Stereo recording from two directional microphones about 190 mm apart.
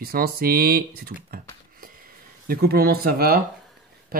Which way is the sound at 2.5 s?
55° right (ahead or behind).